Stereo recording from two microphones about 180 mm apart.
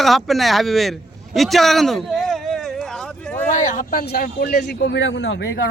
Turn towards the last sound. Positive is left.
turn(degrees=75)  # may be behind; listen again after turning